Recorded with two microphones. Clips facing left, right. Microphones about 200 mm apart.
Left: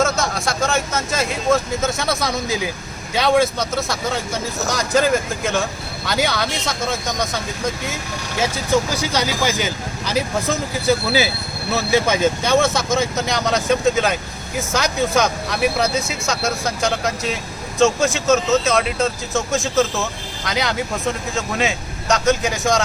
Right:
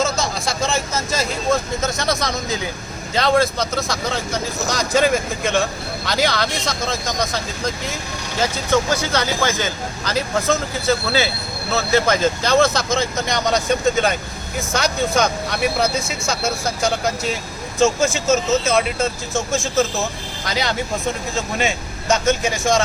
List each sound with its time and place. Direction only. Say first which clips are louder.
0.0 s vehicle: left 2 dB; centre (ahead or behind)
2.0 s speech: even; 5° left (ahead or behind)
8.4 s speech: even; 10° left (ahead or behind)